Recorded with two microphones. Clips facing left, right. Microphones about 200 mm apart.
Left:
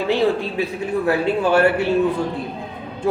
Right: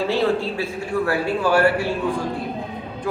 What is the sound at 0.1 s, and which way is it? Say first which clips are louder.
A man's voice: left 2 dB; 15° left (ahead or behind).